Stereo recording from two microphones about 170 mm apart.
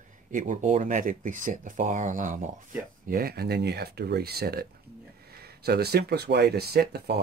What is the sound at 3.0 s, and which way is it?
Speech, 60° right (ahead or behind).